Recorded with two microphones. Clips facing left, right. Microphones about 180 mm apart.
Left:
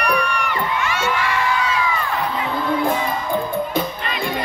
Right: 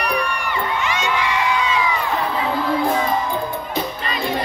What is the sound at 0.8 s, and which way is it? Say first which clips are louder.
Crowd: even; 15° right (ahead or behind).